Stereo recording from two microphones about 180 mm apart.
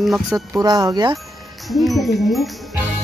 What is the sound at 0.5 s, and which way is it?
Speech, 20° right (ahead or behind).